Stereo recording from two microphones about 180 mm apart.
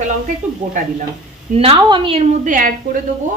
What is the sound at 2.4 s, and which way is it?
Speech, 45° right (ahead or behind).